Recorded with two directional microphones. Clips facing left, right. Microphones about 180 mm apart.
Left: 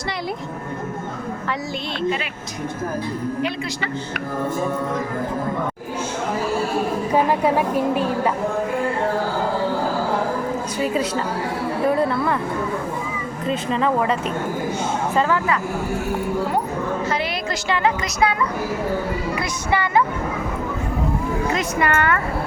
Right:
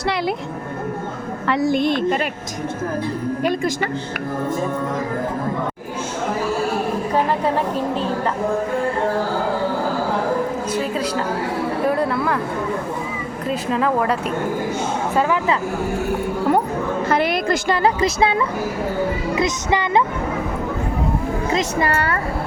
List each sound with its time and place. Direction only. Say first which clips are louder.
1.5 s a woman's voice: right 13 dB; 55° right (ahead or behind)
7.3 s a woman's voice: left 1 dB; 10° left (ahead or behind)
11.9 s speech: left 2 dB; centre (ahead or behind)
13.5 s speech: right 1 dB; centre (ahead or behind)
17.1 s music: right 6 dB; 55° right (ahead or behind)
17.8 s a woman's voice: right 2 dB; 30° right (ahead or behind)
21.5 s speech: right 2 dB; 30° right (ahead or behind)